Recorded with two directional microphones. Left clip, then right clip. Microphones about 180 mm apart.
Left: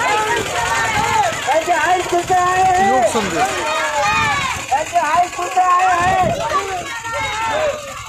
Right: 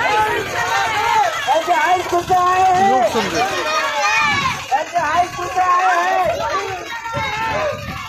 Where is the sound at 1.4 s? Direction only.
60° left (ahead or behind).